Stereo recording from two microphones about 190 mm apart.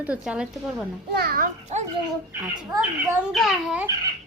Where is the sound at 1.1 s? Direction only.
55° right (ahead or behind).